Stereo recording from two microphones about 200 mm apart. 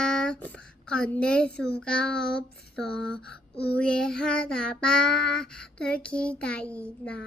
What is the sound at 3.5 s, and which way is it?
Speech, 55° left (ahead or behind).